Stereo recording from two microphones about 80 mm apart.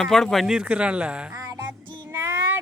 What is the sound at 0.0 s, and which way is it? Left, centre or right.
Speech, centre.